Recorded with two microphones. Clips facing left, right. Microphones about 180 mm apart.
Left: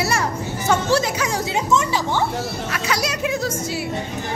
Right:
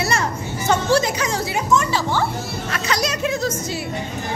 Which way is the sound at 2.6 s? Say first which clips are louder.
Right 3 dB; 10° left (ahead or behind).